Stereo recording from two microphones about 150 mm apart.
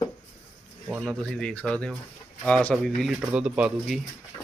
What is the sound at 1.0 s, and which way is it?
Speech, 5° left (ahead or behind).